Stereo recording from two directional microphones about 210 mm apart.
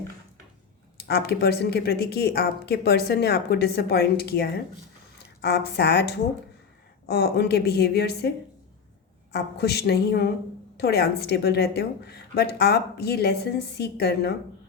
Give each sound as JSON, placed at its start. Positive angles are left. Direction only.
{"t": 0.9, "sound": "speech", "side_deg": 50}
{"t": 9.3, "sound": "speech", "side_deg": 50}